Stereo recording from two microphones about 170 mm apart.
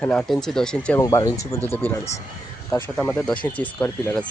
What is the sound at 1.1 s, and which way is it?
Speech, 20° left (ahead or behind).